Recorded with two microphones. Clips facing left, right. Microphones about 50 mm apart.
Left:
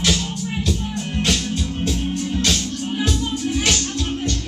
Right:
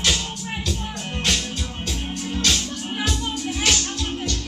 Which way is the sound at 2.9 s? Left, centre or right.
Centre.